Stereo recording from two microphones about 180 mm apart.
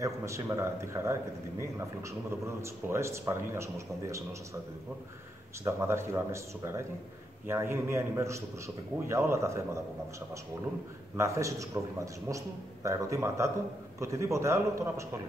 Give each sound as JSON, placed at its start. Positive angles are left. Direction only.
{"t": 0.0, "sound": "speech", "side_deg": -15}
{"t": 5.6, "sound": "speech", "side_deg": -15}
{"t": 11.1, "sound": "speech", "side_deg": -15}